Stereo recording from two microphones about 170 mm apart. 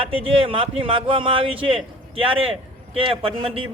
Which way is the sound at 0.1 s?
30° right (ahead or behind).